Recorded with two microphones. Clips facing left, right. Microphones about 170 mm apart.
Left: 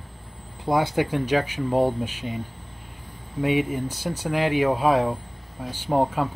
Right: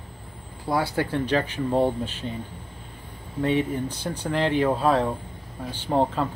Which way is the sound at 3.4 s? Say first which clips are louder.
Left 1 dB; 10° left (ahead or behind).